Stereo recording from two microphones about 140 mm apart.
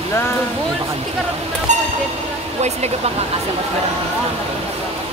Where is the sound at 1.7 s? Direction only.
60° right (ahead or behind).